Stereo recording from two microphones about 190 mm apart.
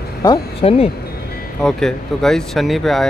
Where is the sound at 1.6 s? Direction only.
Centre (ahead or behind).